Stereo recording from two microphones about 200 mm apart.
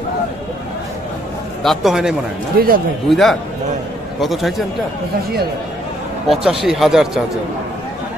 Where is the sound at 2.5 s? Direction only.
45° right (ahead or behind).